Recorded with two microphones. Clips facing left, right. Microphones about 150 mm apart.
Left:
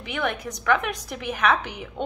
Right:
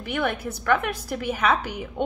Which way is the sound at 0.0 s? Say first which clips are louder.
Right 2 dB; 5° right (ahead or behind).